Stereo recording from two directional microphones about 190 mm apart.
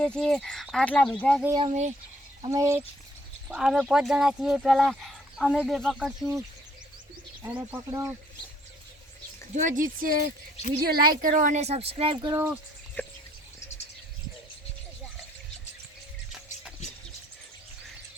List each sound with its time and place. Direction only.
0.0 s speech: 5° left (ahead or behind)
1.6 s speech: 40° right (ahead or behind)
2.5 s speech: 15° right (ahead or behind)
3.5 s speech: 5° right (ahead or behind)
7.4 s speech: 10° right (ahead or behind)
9.6 s speech: 45° right (ahead or behind); by 12.5 s 15° right (ahead or behind)
13.0 s speech: 10° left (ahead or behind)